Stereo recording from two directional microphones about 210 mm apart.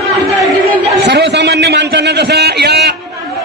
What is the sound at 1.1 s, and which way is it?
A man's voice, 55° right (ahead or behind).